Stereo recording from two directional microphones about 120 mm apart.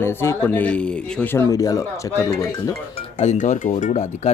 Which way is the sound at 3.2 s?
80° left.